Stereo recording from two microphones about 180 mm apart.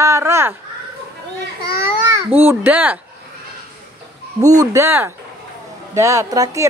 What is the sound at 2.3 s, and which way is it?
Speech, 10° right (ahead or behind).